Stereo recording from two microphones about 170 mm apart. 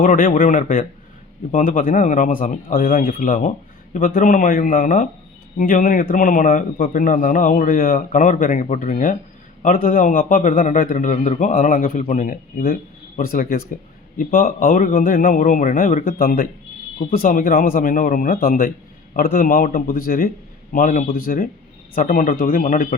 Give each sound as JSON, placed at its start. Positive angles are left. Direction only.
{"t": 0.0, "sound": "a man's voice", "side_deg": 50}